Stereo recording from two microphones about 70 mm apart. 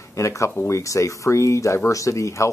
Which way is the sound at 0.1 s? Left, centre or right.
Left.